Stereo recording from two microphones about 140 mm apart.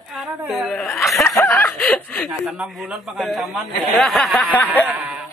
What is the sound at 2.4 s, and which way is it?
A man's voice, 5° right (ahead or behind).